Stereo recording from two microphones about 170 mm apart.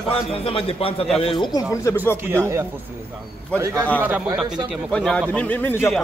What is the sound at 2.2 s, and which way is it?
Speech, 15° right (ahead or behind).